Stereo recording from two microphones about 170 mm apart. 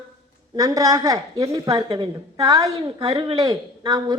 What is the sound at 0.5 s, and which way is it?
A woman's voice, 20° right (ahead or behind).